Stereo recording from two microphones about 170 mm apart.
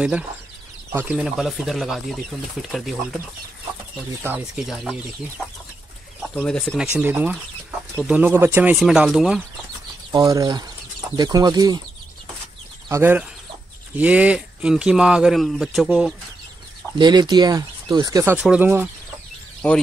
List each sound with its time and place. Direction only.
0.9 s speech: 5° right (ahead or behind)
4.2 s speech: 10° right (ahead or behind)
6.3 s speech: 5° left (ahead or behind)
10.1 s speech: 20° right (ahead or behind)
12.8 s speech: 15° right (ahead or behind)
17.0 s speech: 25° right (ahead or behind)